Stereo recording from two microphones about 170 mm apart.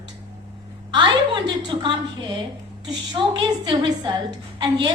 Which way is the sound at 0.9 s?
25° right (ahead or behind).